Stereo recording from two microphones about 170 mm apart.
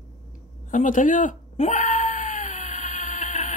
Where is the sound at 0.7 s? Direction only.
50° left (ahead or behind).